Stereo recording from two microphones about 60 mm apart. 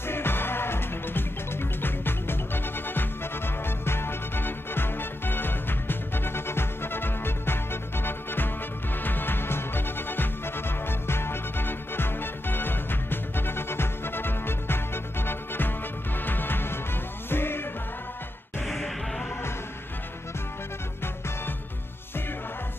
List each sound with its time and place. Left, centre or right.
0.0 s music: left
18.7 s music: centre